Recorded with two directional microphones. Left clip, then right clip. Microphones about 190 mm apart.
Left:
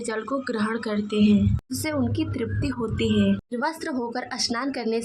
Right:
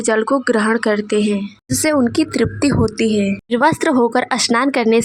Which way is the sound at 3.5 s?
40° right (ahead or behind).